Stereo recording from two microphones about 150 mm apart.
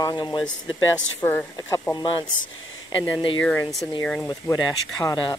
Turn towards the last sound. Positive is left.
turn(degrees=25)  # may be behind; listen again after turning